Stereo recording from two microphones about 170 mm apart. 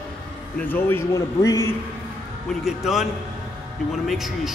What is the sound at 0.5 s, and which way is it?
A man's voice, 10° left (ahead or behind).